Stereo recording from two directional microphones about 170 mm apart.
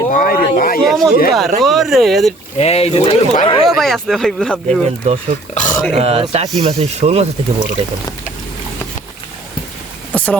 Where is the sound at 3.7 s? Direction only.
Centre (ahead or behind).